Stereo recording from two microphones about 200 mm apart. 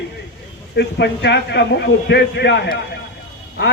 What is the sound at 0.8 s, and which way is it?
A man's voice, 55° left (ahead or behind).